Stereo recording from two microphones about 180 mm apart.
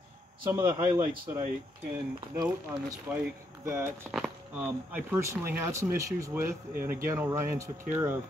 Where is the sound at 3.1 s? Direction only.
10° right (ahead or behind).